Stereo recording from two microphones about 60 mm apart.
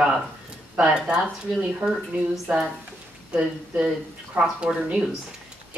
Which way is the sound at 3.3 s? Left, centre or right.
Centre.